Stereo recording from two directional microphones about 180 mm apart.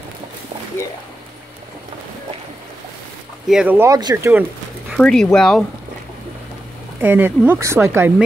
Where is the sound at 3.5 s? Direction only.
5° right (ahead or behind).